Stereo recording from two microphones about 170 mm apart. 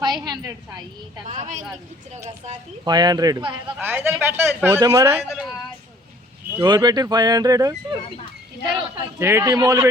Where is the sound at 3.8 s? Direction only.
10° right (ahead or behind).